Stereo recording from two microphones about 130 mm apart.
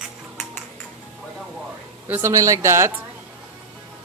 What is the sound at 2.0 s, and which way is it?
Speech, 15° right (ahead or behind).